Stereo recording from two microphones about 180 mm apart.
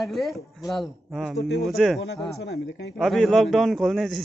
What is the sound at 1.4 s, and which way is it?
Speech, 90° left.